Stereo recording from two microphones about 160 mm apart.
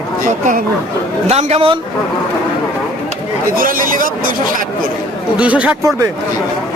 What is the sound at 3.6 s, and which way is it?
Speech, 60° right (ahead or behind).